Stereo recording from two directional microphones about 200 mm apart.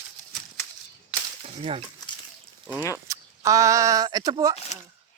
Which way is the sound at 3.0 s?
15° right (ahead or behind).